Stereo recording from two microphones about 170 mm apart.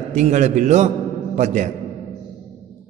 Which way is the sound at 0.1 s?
45° right (ahead or behind).